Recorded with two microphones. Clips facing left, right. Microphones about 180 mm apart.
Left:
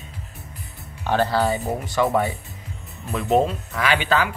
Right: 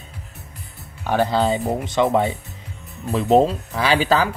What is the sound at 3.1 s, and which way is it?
Speech, 30° right (ahead or behind).